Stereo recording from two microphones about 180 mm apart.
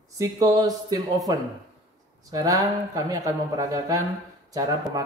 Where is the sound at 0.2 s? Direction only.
20° right (ahead or behind).